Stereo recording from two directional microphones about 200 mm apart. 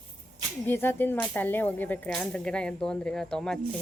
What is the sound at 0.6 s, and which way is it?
Speech, 10° left (ahead or behind).